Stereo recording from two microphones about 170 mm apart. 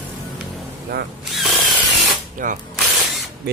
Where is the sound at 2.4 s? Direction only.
50° right (ahead or behind).